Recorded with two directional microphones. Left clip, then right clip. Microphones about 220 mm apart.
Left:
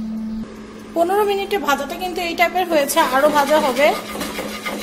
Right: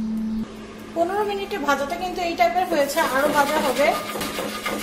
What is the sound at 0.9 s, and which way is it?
A woman's voice, 35° left (ahead or behind).